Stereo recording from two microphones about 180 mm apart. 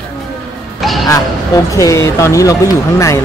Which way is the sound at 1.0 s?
20° left (ahead or behind).